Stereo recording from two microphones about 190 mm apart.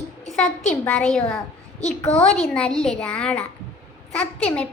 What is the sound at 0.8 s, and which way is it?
A child's voice, 5° left (ahead or behind).